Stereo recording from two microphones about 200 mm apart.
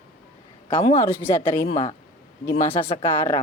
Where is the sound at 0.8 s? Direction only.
30° left (ahead or behind).